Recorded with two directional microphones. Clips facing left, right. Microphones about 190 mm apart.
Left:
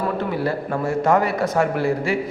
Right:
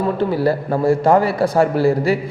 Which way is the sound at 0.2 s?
35° right (ahead or behind).